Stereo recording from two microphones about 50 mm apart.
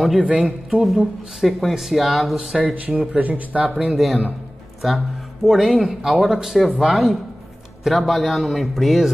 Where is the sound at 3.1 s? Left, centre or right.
Right.